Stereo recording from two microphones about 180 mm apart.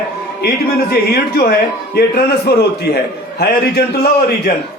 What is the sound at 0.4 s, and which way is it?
A man's voice, 60° left (ahead or behind).